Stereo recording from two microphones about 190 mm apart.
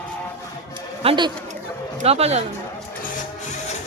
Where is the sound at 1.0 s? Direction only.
25° right (ahead or behind).